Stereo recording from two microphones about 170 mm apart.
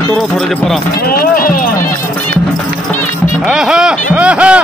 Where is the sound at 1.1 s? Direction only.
60° left (ahead or behind).